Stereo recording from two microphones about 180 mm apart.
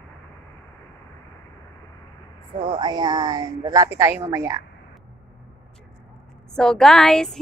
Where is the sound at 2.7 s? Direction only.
25° right (ahead or behind).